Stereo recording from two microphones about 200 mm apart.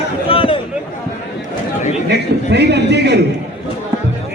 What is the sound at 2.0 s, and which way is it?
A man's voice, 55° right (ahead or behind).